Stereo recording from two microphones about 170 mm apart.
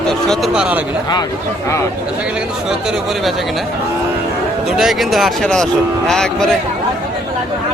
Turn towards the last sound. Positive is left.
turn(degrees=5)  # may be behind; listen again after turning